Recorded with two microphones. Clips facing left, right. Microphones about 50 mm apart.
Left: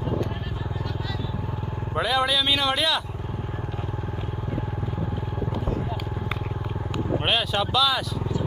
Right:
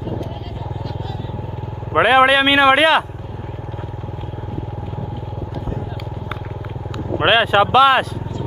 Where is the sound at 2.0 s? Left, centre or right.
Right.